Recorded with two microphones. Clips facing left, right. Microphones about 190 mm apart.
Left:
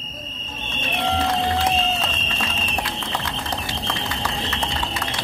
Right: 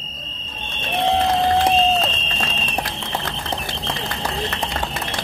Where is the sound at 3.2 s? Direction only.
55° right (ahead or behind).